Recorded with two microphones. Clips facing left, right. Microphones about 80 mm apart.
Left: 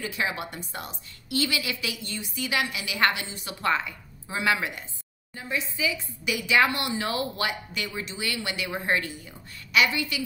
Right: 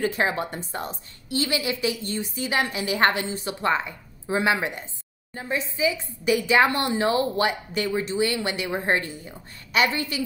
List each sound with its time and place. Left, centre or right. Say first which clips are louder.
0.0 s speech: right 6 dB; right